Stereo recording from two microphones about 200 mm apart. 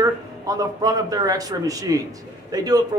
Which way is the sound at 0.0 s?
20° right (ahead or behind).